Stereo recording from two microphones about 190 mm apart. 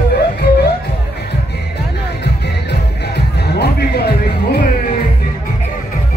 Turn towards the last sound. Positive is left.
turn(degrees=60)  # may be behind; listen again after turning